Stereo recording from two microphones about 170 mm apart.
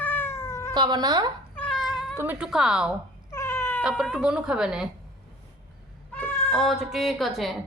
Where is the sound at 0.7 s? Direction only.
25° right (ahead or behind).